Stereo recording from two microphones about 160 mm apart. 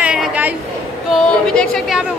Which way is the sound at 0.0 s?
5° right (ahead or behind).